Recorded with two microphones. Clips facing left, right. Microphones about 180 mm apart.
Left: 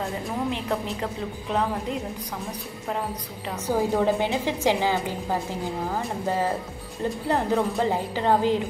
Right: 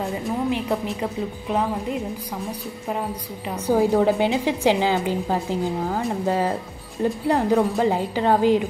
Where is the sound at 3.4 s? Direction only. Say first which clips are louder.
Right 5 dB; 15° right (ahead or behind).